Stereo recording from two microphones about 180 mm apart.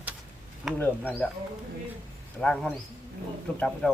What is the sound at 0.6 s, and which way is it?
Speech, centre (ahead or behind).